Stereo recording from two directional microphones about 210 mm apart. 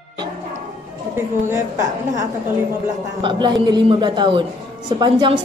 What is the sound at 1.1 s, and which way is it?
A woman's voice, 15° right (ahead or behind).